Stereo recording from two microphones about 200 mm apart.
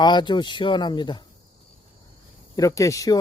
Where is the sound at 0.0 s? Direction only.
20° left (ahead or behind).